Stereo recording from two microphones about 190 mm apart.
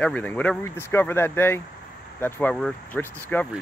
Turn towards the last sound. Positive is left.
turn(degrees=10)  # may be behind; listen again after turning